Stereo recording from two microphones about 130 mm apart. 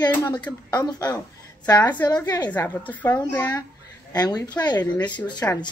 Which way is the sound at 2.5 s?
15° left (ahead or behind).